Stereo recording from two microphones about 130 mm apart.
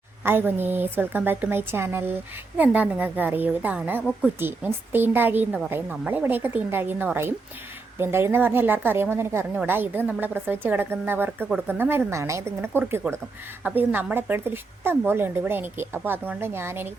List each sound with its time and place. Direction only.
0.3 s a woman's voice: 15° right (ahead or behind)